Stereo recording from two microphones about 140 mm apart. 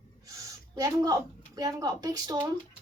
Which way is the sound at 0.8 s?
25° right (ahead or behind).